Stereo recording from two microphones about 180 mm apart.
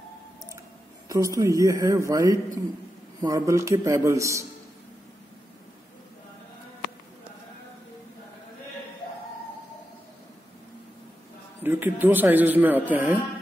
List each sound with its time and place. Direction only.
1.0 s speech: 20° right (ahead or behind)
11.6 s speech: 10° right (ahead or behind)